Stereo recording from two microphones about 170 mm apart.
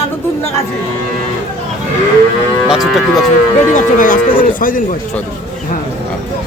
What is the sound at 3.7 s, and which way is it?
Speech, 50° left (ahead or behind).